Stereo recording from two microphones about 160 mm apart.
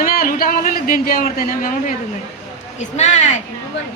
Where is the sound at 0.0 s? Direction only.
70° left (ahead or behind).